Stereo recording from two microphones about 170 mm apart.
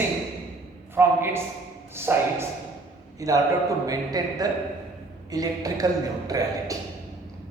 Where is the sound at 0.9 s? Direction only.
15° right (ahead or behind).